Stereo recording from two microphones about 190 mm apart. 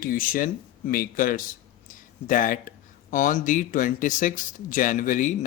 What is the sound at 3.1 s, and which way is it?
Speech, 45° left (ahead or behind).